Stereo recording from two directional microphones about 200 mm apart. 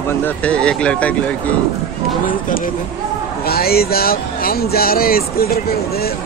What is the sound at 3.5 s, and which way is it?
Speech, 50° left (ahead or behind).